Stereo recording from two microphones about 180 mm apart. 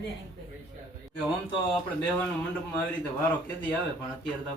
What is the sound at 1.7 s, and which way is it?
Speech, 5° left (ahead or behind).